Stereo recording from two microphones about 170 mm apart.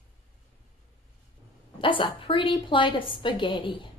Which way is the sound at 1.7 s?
30° left (ahead or behind).